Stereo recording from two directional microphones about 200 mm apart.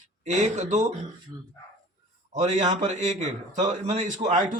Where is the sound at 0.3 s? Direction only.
35° right (ahead or behind).